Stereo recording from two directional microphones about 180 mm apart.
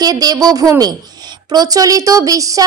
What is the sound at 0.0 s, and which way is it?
Speech, 20° right (ahead or behind).